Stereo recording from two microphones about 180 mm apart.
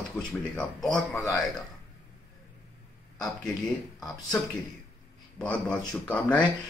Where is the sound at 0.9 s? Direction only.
20° left (ahead or behind).